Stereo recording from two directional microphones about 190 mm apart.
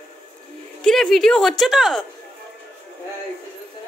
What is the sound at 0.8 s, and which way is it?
Speech, centre (ahead or behind).